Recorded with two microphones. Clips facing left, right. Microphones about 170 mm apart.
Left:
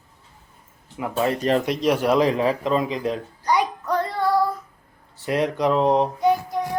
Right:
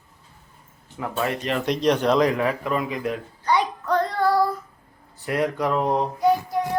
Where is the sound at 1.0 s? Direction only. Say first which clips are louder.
Left 3 dB; 25° left (ahead or behind).